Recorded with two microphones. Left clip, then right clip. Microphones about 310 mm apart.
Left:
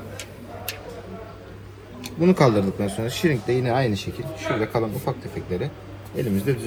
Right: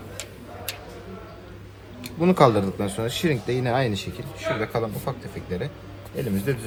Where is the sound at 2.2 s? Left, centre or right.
Centre.